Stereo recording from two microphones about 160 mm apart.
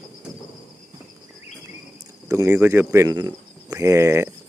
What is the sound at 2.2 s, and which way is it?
Speech, 20° right (ahead or behind).